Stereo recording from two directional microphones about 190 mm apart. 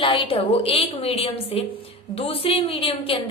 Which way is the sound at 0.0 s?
30° left (ahead or behind).